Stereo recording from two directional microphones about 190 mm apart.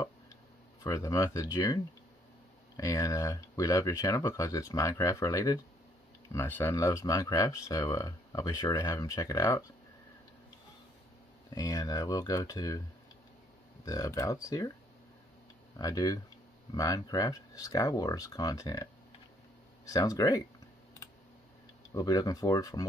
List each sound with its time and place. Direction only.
0.8 s speech: 15° left (ahead or behind)
2.8 s speech: 15° left (ahead or behind)
11.5 s speech: 20° left (ahead or behind)
13.8 s speech: 15° left (ahead or behind)
15.8 s speech: 20° left (ahead or behind)
19.9 s speech: 20° left (ahead or behind)
21.9 s speech: 20° left (ahead or behind)